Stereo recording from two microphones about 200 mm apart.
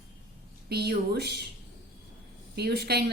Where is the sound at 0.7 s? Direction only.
55° right (ahead or behind).